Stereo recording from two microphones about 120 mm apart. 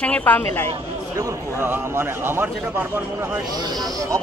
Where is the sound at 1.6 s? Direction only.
20° right (ahead or behind).